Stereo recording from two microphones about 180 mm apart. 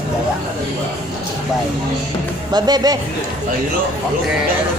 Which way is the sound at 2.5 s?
25° right (ahead or behind).